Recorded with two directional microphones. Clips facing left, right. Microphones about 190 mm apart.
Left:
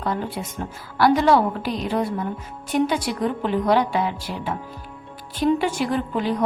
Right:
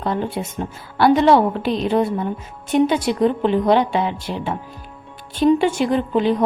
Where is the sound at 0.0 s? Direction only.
25° right (ahead or behind).